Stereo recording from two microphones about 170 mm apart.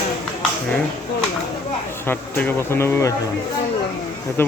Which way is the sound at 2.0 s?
10° left (ahead or behind).